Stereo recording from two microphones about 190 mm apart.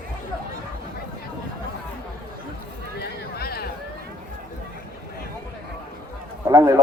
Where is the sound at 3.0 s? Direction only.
55° left (ahead or behind).